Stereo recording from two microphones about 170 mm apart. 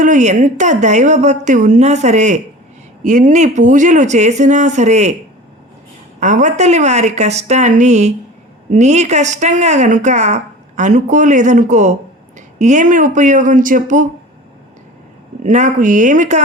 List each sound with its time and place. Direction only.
0.0 s a woman's voice: 45° right (ahead or behind)
6.1 s a woman's voice: 45° right (ahead or behind)
15.4 s a woman's voice: 45° right (ahead or behind)